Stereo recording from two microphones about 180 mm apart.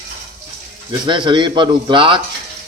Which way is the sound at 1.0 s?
25° right (ahead or behind).